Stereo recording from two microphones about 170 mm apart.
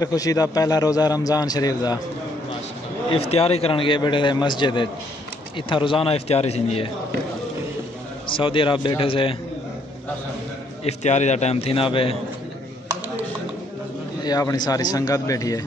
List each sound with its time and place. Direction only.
0.0 s a man's voice: 20° left (ahead or behind)
3.1 s a man's voice: 35° left (ahead or behind)
8.4 s a man's voice: 30° left (ahead or behind)
10.8 s a man's voice: 40° left (ahead or behind)
14.2 s a man's voice: 20° left (ahead or behind)